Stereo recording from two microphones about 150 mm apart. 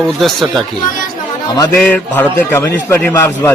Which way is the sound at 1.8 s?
10° left (ahead or behind).